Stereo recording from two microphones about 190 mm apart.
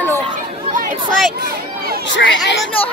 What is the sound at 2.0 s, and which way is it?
Speech, 70° left (ahead or behind).